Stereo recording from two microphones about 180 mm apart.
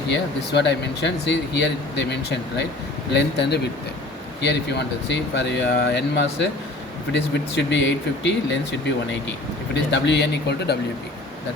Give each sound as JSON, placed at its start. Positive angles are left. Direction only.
{"t": 0.1, "sound": "speech", "side_deg": 75}
{"t": 9.7, "sound": "speech", "side_deg": 75}